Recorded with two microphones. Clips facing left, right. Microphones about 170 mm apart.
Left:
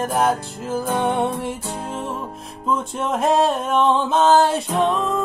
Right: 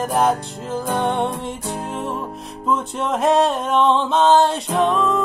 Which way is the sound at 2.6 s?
Centre (ahead or behind).